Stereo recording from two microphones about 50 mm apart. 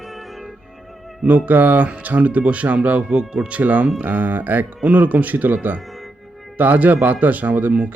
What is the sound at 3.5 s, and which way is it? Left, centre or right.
Speech, right.